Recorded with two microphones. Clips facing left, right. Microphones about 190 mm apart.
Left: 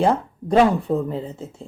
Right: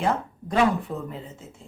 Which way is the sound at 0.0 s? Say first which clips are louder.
Left 6 dB; 30° left (ahead or behind).